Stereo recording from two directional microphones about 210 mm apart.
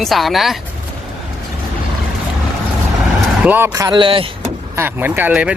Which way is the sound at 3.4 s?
10° right (ahead or behind).